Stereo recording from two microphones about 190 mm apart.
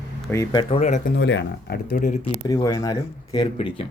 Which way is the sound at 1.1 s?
65° left (ahead or behind).